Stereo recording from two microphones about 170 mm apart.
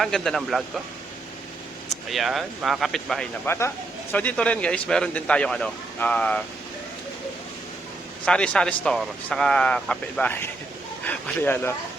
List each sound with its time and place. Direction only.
0.0 s speech: centre (ahead or behind)
2.0 s speech: centre (ahead or behind)
3.4 s a man's voice: 15° left (ahead or behind)
8.2 s a man's voice: 5° left (ahead or behind)